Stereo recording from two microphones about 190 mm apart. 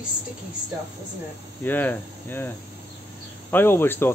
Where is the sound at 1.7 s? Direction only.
10° left (ahead or behind).